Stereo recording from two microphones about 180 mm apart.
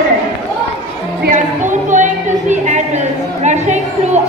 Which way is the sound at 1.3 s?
45° right (ahead or behind).